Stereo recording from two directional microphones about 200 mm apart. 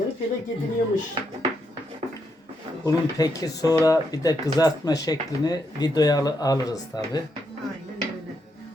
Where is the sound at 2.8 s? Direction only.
20° left (ahead or behind).